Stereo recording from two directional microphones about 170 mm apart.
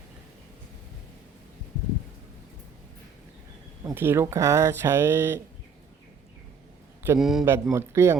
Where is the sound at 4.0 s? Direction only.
15° right (ahead or behind).